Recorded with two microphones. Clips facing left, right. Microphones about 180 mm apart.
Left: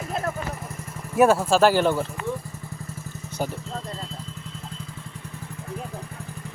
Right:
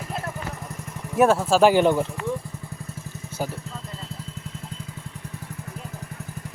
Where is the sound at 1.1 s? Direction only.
Centre (ahead or behind).